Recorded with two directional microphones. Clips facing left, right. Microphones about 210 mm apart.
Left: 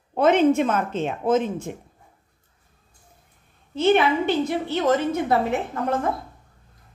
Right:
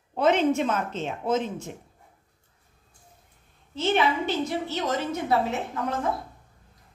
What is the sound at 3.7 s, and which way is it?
A woman's voice, 60° left (ahead or behind).